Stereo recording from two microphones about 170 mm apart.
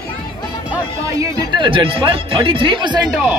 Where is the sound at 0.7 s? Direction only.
20° right (ahead or behind).